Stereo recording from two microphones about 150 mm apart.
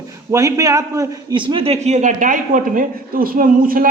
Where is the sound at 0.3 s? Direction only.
20° right (ahead or behind).